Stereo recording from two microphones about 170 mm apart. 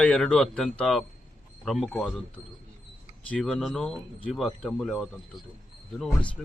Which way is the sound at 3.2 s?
5° left (ahead or behind).